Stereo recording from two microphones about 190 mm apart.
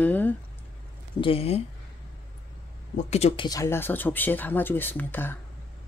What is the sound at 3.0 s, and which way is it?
Speech, 35° left (ahead or behind).